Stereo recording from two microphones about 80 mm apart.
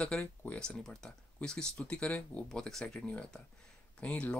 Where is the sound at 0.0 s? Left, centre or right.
Centre.